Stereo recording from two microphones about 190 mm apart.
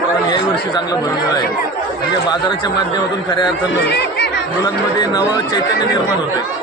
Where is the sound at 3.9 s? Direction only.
60° left (ahead or behind).